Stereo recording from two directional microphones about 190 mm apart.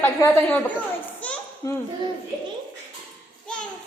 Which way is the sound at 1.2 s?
10° left (ahead or behind).